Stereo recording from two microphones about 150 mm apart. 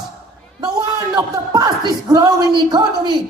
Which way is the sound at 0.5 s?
30° right (ahead or behind).